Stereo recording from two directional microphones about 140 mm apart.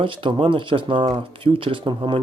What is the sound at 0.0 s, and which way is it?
Speech, 35° right (ahead or behind).